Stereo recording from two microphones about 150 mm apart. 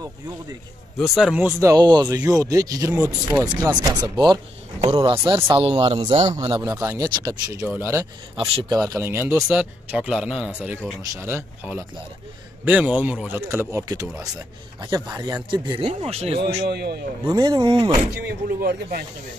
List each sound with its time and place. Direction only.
0.9 s speech: centre (ahead or behind)
1.4 s speech: 20° right (ahead or behind)
3.0 s speech: 10° right (ahead or behind)
3.6 s speech: 25° right (ahead or behind)
7.6 s speech: 10° right (ahead or behind)
8.4 s speech: 40° right (ahead or behind)
8.7 s speech: 25° right (ahead or behind)
15.0 s speech: 15° right (ahead or behind)
15.8 s speech: 40° right (ahead or behind)
16.6 s speech: 90° right
17.3 s speech: 25° right (ahead or behind)
18.1 s speech: 90° right